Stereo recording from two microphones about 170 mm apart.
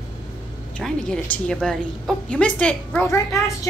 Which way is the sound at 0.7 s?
5° left (ahead or behind).